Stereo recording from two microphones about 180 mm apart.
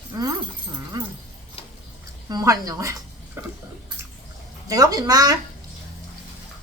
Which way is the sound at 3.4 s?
10° right (ahead or behind).